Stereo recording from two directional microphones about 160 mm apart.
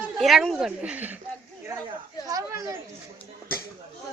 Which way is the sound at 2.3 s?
20° right (ahead or behind).